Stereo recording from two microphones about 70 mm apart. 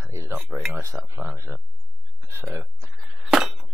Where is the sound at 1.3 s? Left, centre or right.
Right.